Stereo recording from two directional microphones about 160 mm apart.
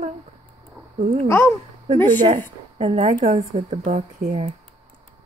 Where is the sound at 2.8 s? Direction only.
40° right (ahead or behind).